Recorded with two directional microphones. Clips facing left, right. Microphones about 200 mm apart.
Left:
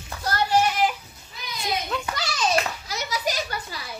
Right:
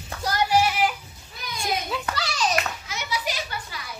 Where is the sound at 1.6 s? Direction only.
Centre (ahead or behind).